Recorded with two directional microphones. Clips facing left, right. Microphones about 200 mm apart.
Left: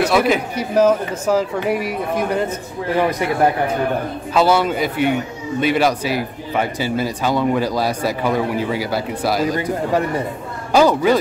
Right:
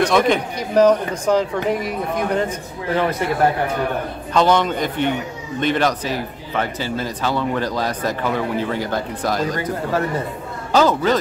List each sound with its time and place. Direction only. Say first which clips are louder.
0.0 s speech: even; 5° left (ahead or behind)
4.3 s speech: left 1 dB; 5° left (ahead or behind)